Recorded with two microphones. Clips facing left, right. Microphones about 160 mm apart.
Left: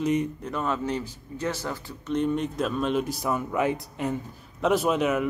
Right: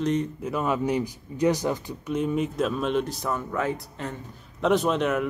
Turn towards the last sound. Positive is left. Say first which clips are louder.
# even
turn(degrees=5)  # may be behind; listen again after turning